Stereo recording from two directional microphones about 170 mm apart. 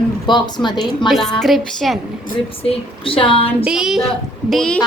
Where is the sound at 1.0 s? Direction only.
Centre (ahead or behind).